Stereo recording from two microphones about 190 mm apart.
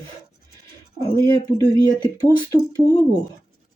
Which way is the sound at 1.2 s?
20° left (ahead or behind).